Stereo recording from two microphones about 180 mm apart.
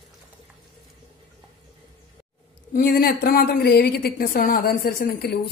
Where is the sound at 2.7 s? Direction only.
55° left (ahead or behind).